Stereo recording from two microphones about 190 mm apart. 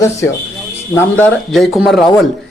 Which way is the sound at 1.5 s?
Centre (ahead or behind).